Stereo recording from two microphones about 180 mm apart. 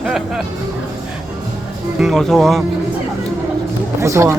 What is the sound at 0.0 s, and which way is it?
Speech, centre (ahead or behind).